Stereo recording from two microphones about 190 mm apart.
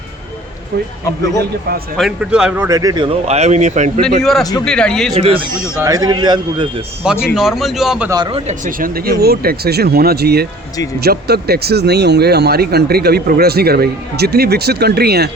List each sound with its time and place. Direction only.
2.0 s speech: 5° right (ahead or behind); by 4.0 s 40° right (ahead or behind)
4.2 s a man's voice: centre (ahead or behind)
5.1 s speech: 30° right (ahead or behind)
7.0 s a man's voice: 5° right (ahead or behind)
8.1 s speech: 25° right (ahead or behind)
8.4 s speech: 45° right (ahead or behind)